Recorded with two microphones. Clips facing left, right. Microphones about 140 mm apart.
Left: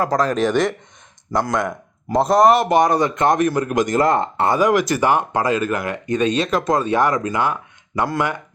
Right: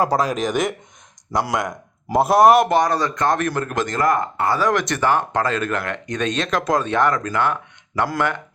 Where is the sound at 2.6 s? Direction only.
20° left (ahead or behind).